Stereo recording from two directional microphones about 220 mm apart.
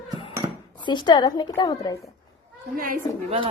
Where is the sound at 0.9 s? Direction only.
20° left (ahead or behind).